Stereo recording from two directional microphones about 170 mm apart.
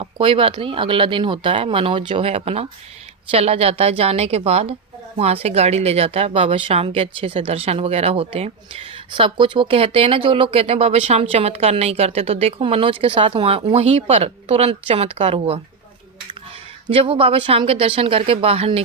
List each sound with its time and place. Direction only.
0.0 s speech: 35° right (ahead or behind)
16.9 s speech: 35° right (ahead or behind)